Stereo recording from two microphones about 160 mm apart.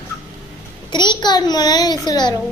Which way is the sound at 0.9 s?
30° left (ahead or behind).